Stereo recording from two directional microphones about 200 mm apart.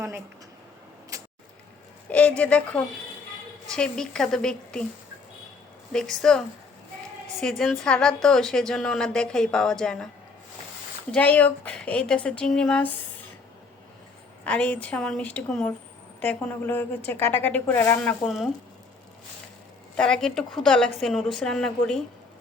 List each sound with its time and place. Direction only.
1.1 s a sound: 15° right (ahead or behind)
2.0 s a woman's voice: 5° left (ahead or behind)
5.9 s a woman's voice: 5° left (ahead or behind)
11.1 s a woman's voice: 5° left (ahead or behind)
14.4 s a woman's voice: 5° left (ahead or behind)
20.0 s a woman's voice: 5° left (ahead or behind)